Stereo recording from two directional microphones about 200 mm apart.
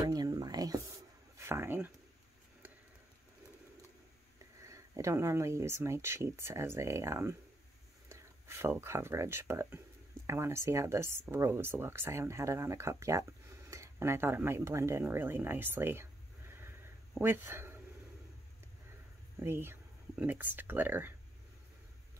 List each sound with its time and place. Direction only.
0.0 s a sound: 20° right (ahead or behind)
1.4 s speech: 10° right (ahead or behind)
4.6 s speech: 15° right (ahead or behind)
19.4 s speech: 10° right (ahead or behind)